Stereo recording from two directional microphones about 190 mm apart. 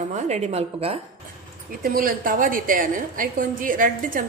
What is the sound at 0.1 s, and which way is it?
Speech, 35° right (ahead or behind).